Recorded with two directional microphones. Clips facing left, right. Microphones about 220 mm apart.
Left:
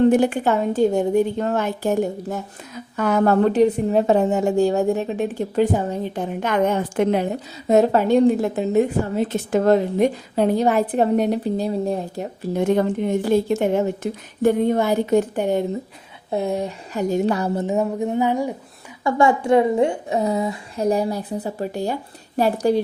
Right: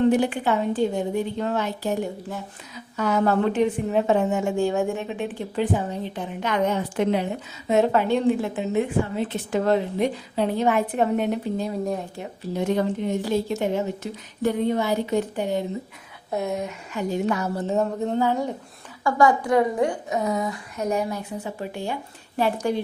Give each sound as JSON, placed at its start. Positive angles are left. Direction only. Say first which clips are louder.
{"t": 0.1, "sound": "a woman's voice", "louder": "left 4 dB", "side_deg": 45}
{"t": 12.5, "sound": "a woman's voice", "louder": "left 4 dB", "side_deg": 50}
{"t": 16.3, "sound": "speech", "louder": "left 4 dB", "side_deg": 30}
{"t": 19.0, "sound": "a woman's voice", "louder": "left 2 dB", "side_deg": 25}